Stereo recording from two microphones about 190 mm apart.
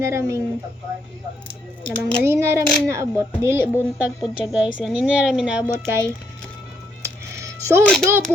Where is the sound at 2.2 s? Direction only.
15° right (ahead or behind).